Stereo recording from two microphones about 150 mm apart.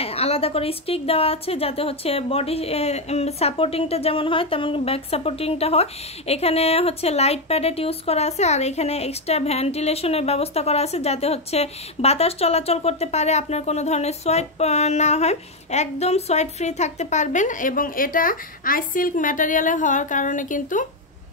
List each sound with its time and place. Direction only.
0.0 s a woman's voice: 40° left (ahead or behind); by 20.8 s 60° left (ahead or behind)